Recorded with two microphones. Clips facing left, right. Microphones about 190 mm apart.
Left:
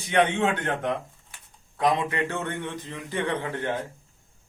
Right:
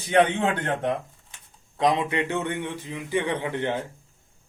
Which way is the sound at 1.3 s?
20° right (ahead or behind).